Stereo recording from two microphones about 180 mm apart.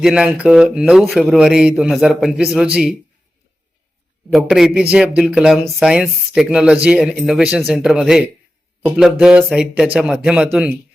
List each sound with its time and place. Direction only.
0.0 s speech: 5° right (ahead or behind)
4.3 s speech: centre (ahead or behind)